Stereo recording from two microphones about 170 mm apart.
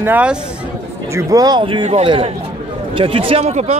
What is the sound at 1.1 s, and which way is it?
A man's voice, 20° right (ahead or behind).